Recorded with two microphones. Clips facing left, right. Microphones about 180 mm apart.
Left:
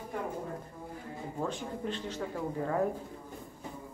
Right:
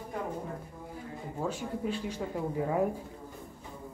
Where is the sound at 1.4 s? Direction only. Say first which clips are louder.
Right 2 dB; 5° right (ahead or behind).